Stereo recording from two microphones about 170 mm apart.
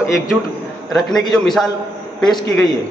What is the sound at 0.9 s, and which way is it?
Speech, centre (ahead or behind).